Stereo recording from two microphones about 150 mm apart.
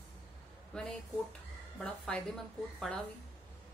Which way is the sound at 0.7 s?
5° left (ahead or behind).